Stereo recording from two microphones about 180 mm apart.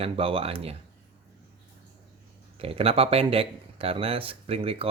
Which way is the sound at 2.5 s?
30° right (ahead or behind).